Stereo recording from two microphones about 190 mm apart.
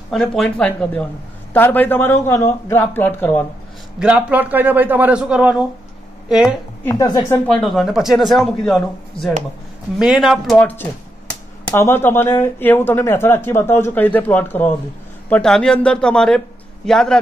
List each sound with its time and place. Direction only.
0.1 s speech: 5° left (ahead or behind)
4.0 s a man's voice: 5° right (ahead or behind)
6.8 s a woman's voice: 10° left (ahead or behind)
7.4 s speech: centre (ahead or behind)
9.9 s speech: 5° right (ahead or behind)